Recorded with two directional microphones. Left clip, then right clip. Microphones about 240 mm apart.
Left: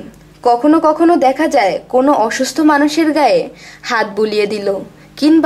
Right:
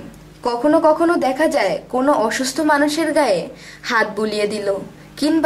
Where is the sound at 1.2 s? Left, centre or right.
Centre.